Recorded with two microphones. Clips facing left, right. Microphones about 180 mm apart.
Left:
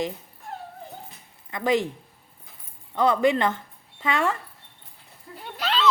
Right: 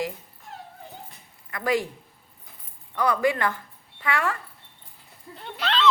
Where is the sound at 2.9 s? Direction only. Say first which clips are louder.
Left 3 dB; 25° left (ahead or behind).